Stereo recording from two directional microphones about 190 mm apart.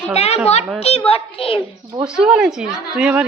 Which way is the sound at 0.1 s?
35° left (ahead or behind).